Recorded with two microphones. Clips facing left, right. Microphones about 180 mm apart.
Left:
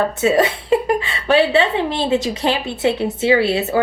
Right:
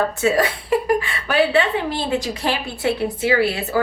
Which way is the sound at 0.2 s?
20° left (ahead or behind).